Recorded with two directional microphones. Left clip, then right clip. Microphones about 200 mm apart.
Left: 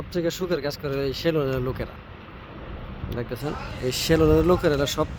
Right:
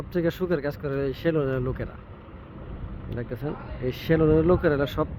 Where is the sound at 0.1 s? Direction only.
Centre (ahead or behind).